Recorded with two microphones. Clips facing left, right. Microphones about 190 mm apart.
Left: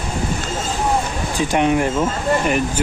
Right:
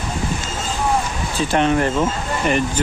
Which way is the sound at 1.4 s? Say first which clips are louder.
Even; 10° left (ahead or behind).